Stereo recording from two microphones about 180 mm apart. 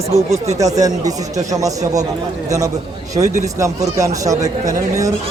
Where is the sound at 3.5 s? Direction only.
20° right (ahead or behind).